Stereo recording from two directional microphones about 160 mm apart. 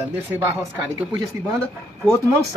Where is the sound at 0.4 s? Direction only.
15° right (ahead or behind).